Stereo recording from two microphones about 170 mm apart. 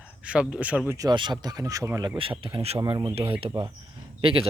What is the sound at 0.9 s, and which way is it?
Speech, 25° right (ahead or behind).